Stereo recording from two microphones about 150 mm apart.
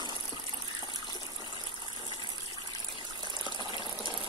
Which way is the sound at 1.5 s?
30° left (ahead or behind).